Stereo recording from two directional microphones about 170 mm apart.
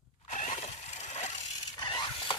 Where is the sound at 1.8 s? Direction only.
25° left (ahead or behind).